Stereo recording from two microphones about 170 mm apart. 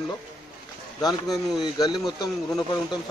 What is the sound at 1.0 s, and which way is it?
Speech, 20° left (ahead or behind).